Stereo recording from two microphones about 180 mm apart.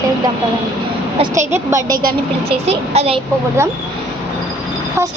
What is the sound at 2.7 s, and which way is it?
Speech, 35° right (ahead or behind).